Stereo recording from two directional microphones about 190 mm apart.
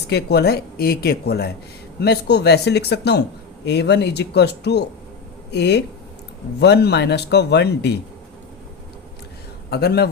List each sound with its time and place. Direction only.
0.1 s speech: 60° left (ahead or behind)
9.6 s a man's voice: 55° left (ahead or behind)